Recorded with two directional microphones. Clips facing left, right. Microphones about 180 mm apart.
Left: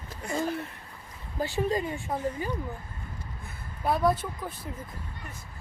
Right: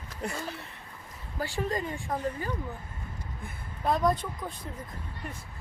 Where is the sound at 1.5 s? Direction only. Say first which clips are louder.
Left 3 dB; 15° left (ahead or behind).